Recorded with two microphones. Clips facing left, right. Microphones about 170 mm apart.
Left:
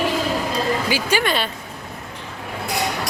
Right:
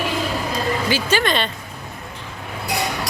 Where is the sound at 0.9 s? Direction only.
10° left (ahead or behind).